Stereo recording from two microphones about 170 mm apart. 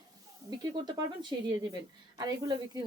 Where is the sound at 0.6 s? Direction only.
25° right (ahead or behind).